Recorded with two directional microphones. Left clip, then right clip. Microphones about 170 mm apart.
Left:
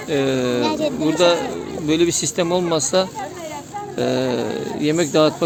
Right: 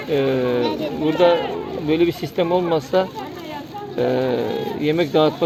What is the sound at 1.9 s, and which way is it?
Speech, 25° left (ahead or behind).